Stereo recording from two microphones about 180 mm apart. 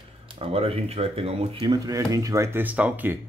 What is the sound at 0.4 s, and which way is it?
Speech, 35° right (ahead or behind).